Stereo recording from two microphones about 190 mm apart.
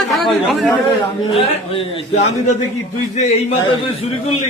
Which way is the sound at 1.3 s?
30° left (ahead or behind).